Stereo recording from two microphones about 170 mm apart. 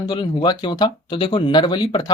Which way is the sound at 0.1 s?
25° left (ahead or behind).